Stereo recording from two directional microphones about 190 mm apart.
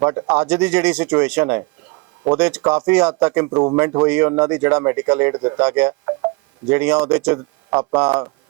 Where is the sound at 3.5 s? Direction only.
25° right (ahead or behind).